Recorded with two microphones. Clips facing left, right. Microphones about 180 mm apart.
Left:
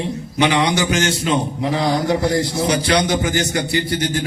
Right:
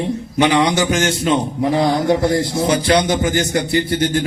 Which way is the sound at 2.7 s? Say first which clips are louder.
Right 3 dB; 50° right (ahead or behind).